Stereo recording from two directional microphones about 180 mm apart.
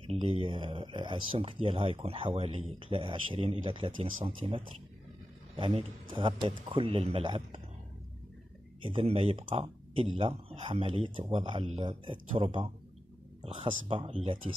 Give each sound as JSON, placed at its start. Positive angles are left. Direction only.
{"t": 0.0, "sound": "speech", "side_deg": -30}
{"t": 5.6, "sound": "speech", "side_deg": -30}
{"t": 8.8, "sound": "speech", "side_deg": -30}